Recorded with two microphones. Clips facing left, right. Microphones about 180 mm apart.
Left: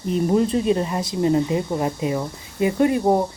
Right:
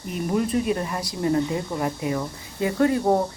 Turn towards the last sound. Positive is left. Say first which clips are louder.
# left 2 dB
turn(degrees=20)  # may be behind; listen again after turning